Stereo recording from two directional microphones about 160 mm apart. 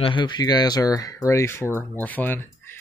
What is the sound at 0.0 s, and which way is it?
Speech, 30° left (ahead or behind).